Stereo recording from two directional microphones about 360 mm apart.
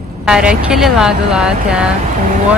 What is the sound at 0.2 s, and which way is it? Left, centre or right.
Speech, centre.